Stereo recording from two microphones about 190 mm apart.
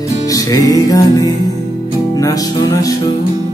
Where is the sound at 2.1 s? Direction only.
15° left (ahead or behind).